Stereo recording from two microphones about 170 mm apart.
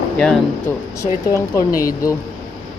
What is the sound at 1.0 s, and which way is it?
Speech, 20° left (ahead or behind).